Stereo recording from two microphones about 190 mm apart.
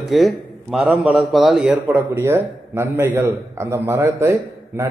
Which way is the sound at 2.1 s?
15° right (ahead or behind).